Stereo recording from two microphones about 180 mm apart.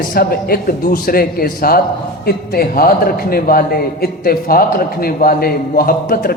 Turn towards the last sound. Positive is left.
turn(degrees=55)  # may be behind; listen again after turning